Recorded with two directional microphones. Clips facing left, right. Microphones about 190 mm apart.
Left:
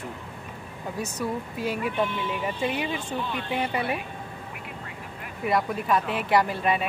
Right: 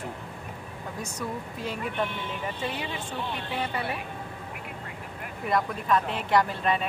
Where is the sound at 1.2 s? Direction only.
5° left (ahead or behind).